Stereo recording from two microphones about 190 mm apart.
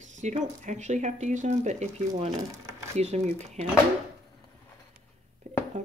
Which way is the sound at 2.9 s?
35° right (ahead or behind).